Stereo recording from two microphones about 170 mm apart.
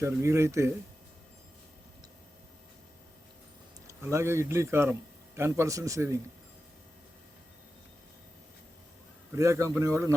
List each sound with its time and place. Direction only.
0.0 s speech: 15° right (ahead or behind)
3.8 s a man's voice: 15° right (ahead or behind)
9.3 s speech: 15° right (ahead or behind)